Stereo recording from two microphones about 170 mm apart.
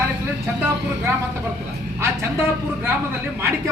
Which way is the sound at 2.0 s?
15° right (ahead or behind).